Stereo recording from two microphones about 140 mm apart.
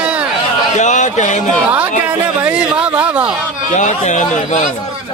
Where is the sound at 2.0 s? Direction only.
10° right (ahead or behind).